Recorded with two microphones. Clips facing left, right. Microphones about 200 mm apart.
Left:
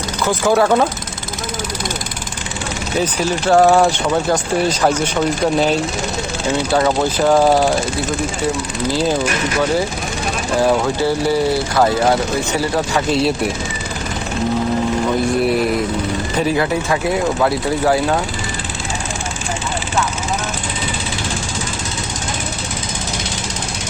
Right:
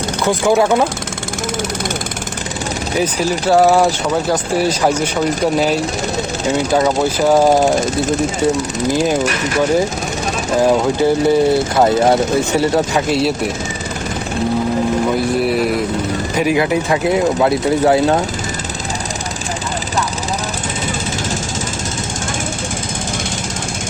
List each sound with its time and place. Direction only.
0.4 s speech: 10° right (ahead or behind)
3.5 s speech: 5° right (ahead or behind)
7.3 s speech: 20° right (ahead or behind)
10.6 s speech: 20° right (ahead or behind)
16.3 s speech: 15° right (ahead or behind)